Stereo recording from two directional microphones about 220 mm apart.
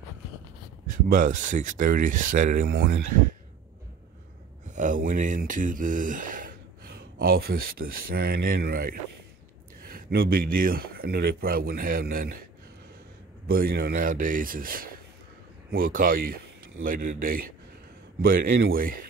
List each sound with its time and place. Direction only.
0.8 s speech: 35° right (ahead or behind)
4.6 s speech: 35° right (ahead or behind)
13.5 s speech: 40° right (ahead or behind)